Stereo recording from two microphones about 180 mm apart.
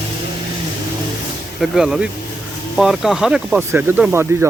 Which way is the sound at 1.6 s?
5° right (ahead or behind).